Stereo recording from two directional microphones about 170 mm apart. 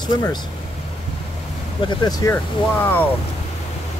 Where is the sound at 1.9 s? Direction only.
25° left (ahead or behind).